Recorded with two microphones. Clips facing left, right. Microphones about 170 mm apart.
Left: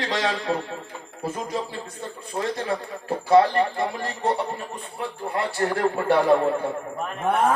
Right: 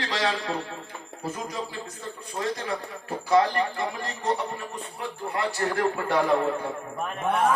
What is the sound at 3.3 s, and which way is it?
A man's voice, 25° left (ahead or behind).